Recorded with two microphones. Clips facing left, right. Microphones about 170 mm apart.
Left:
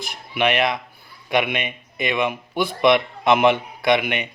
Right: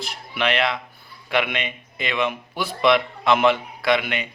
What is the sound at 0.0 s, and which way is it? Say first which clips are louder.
A man's voice: left 3 dB; 15° left (ahead or behind).